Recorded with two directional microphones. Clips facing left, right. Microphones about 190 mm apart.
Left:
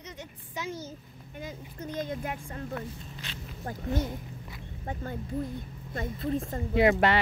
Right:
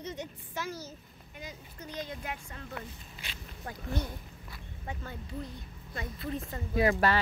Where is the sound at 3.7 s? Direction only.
40° left (ahead or behind).